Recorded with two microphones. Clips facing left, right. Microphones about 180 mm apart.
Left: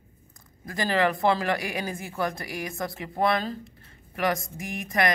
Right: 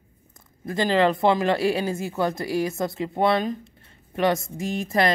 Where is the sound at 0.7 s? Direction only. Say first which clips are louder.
Right 4 dB; 25° right (ahead or behind).